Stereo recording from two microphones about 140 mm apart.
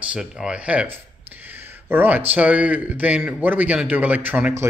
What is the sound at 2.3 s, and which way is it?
Speech, 10° right (ahead or behind).